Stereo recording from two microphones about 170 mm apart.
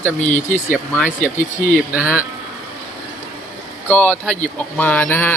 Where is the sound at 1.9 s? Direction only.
10° right (ahead or behind).